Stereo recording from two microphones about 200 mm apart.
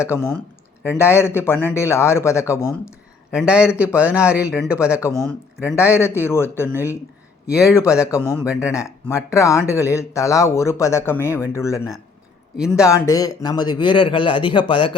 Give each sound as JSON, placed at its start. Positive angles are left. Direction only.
{"t": 0.0, "sound": "speech", "side_deg": 15}
{"t": 3.3, "sound": "speech", "side_deg": -5}
{"t": 5.7, "sound": "speech", "side_deg": 15}
{"t": 8.0, "sound": "speech", "side_deg": 15}
{"t": 12.5, "sound": "speech", "side_deg": -5}
{"t": 12.8, "sound": "a man's voice", "side_deg": 15}